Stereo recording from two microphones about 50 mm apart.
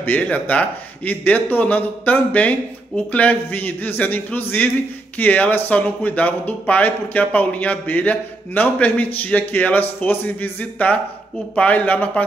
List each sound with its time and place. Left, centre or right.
0.2 s a man's voice: left